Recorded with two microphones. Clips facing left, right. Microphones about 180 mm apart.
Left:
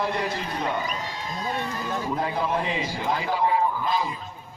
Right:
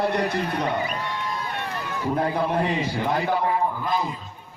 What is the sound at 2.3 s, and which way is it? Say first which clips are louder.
A man's voice: right 3 dB; 55° right (ahead or behind).